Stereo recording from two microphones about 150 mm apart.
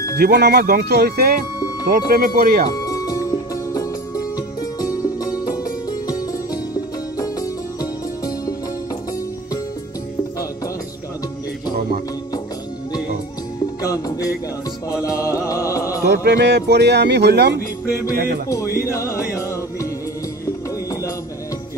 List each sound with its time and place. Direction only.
0.1 s speech: 90° right
1.9 s speech: 70° right (ahead or behind)
2.7 s music: 25° left (ahead or behind)
13.8 s music: 25° left (ahead or behind)
16.3 s speech: 90° right
18.1 s music: 80° right
18.5 s music: 20° left (ahead or behind)